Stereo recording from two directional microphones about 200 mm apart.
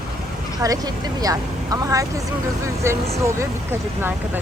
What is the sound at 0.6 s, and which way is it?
Speech, 20° right (ahead or behind).